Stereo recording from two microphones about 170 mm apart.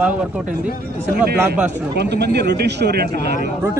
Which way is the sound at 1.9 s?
75° right (ahead or behind).